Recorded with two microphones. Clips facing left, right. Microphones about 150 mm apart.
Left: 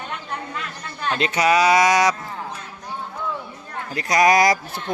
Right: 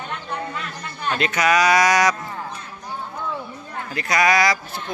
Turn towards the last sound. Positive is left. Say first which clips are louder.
# left 2 dB
turn(degrees=45)  # may be behind; listen again after turning